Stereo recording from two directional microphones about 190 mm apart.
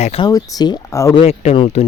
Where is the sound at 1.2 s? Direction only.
35° left (ahead or behind).